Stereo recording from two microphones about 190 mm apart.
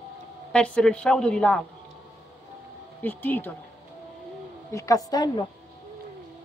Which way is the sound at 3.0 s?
10° left (ahead or behind).